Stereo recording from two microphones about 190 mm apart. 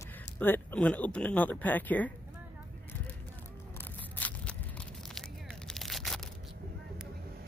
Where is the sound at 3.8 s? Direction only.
10° left (ahead or behind).